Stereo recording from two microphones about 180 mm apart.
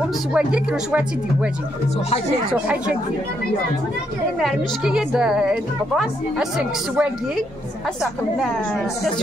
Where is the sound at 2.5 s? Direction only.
10° right (ahead or behind).